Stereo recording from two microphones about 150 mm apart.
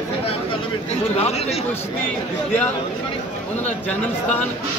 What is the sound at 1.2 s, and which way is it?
Speech, 45° left (ahead or behind).